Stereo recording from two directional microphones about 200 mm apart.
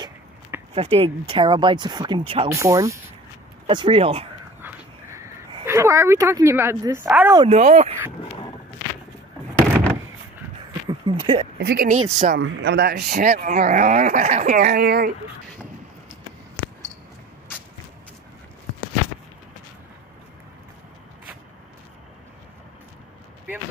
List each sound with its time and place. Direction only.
0.7 s speech: 30° right (ahead or behind)
4.6 s a sound: 10° right (ahead or behind)
7.3 s speech: 35° right (ahead or behind)
10.9 s speech: 25° right (ahead or behind)
11.6 s speech: 50° right (ahead or behind)
14.5 s speech: 45° right (ahead or behind)